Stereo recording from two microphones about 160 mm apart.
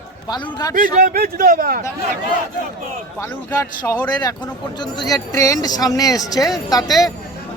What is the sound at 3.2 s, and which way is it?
Speech, 20° left (ahead or behind).